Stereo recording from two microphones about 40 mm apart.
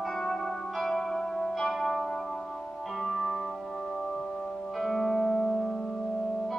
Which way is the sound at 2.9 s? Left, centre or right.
Centre.